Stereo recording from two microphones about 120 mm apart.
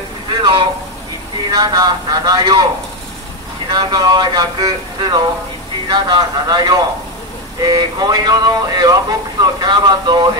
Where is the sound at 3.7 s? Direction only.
35° right (ahead or behind).